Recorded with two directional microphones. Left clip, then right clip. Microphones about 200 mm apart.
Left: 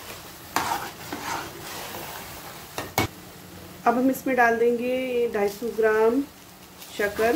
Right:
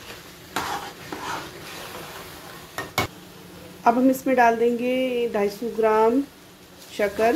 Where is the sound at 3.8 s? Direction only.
15° right (ahead or behind).